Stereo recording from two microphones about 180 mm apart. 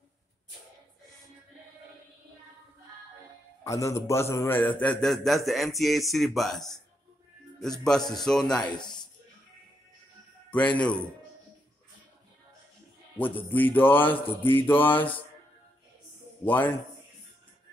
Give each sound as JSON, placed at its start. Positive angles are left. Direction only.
{"t": 3.6, "sound": "a man's voice", "side_deg": 15}
{"t": 8.8, "sound": "a sound", "side_deg": 25}
{"t": 10.5, "sound": "mantra", "side_deg": 5}
{"t": 13.5, "sound": "mantra", "side_deg": 10}
{"t": 16.4, "sound": "mantra", "side_deg": 10}